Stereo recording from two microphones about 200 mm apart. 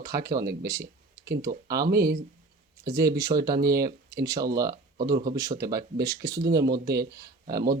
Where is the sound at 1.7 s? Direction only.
50° right (ahead or behind).